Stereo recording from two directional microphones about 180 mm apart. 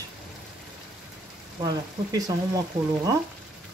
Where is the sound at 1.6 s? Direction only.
20° right (ahead or behind).